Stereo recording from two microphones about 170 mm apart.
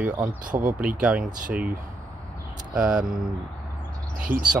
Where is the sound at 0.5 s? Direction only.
25° right (ahead or behind).